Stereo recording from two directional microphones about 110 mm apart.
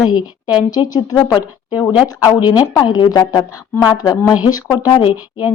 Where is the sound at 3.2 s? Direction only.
35° left (ahead or behind).